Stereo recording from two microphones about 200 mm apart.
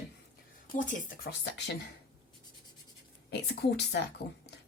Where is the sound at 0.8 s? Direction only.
40° left (ahead or behind).